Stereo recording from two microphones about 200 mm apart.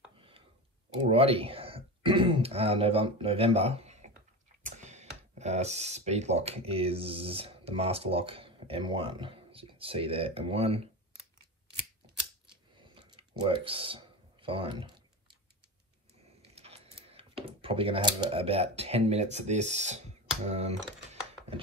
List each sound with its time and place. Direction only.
1.0 s speech: 30° right (ahead or behind)
12.7 s a sound: 25° right (ahead or behind)
16.5 s speech: 30° right (ahead or behind)